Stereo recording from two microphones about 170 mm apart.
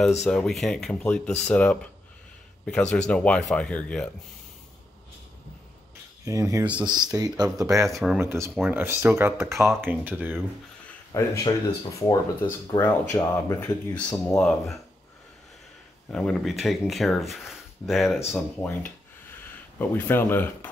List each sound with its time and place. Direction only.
0.2 s speech: centre (ahead or behind)
6.2 s speech: 20° right (ahead or behind)
6.6 s speech: 5° right (ahead or behind)
6.9 s speech: 25° right (ahead or behind)
7.8 s speech: centre (ahead or behind)
8.2 s speech: 15° right (ahead or behind)
11.1 s speech: 20° left (ahead or behind); by 14.8 s 5° left (ahead or behind)
16.1 s speech: 5° left (ahead or behind)